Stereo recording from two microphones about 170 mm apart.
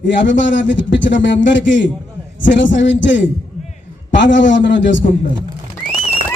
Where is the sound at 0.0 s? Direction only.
90° left.